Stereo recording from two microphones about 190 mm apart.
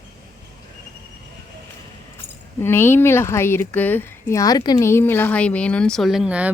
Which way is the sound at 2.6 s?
10° left (ahead or behind).